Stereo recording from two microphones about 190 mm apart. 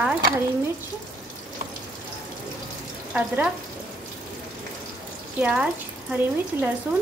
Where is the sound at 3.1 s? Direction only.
10° right (ahead or behind).